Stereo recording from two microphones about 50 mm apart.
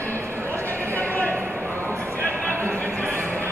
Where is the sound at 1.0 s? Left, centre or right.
Left.